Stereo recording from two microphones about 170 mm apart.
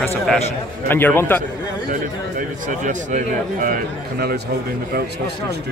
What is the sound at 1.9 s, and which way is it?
A man's voice, 50° right (ahead or behind).